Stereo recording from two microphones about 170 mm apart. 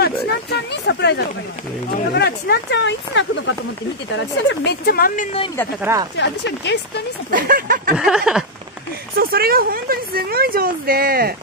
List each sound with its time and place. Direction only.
0.0 s speech: 80° left
2.1 s speech: 70° left (ahead or behind); by 3.5 s 90° left
4.5 s a woman's voice: 70° left (ahead or behind); by 5.4 s 50° left (ahead or behind)
5.8 s speech: 15° right (ahead or behind)
6.1 s speech: 90° left
7.2 s a woman's voice: 55° right (ahead or behind)
8.0 s a sound: 5° right (ahead or behind)
9.1 s a woman's voice: 60° right (ahead or behind)